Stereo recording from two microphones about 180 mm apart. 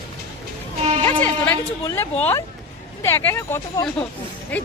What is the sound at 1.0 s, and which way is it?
A woman's voice, 10° left (ahead or behind).